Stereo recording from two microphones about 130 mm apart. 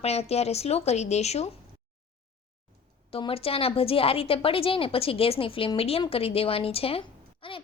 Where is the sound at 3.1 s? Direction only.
45° left (ahead or behind).